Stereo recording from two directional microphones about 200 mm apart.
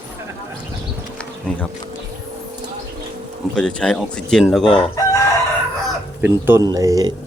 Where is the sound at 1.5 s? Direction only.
5° left (ahead or behind).